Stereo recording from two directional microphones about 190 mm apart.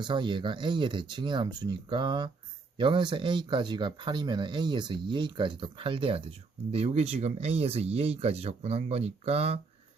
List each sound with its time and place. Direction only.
0.0 s speech: 25° right (ahead or behind)